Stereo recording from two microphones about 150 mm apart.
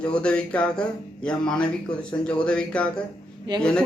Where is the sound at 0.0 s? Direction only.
5° left (ahead or behind).